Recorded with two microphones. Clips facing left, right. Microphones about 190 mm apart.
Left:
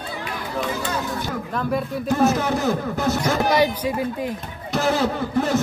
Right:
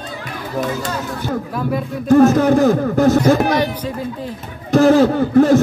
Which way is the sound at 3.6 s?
10° left (ahead or behind).